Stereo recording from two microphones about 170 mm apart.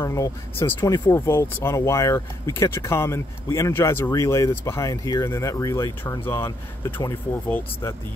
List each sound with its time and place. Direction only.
0.0 s speech: 15° left (ahead or behind)